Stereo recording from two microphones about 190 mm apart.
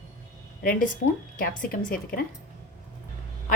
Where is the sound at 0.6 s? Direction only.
45° left (ahead or behind).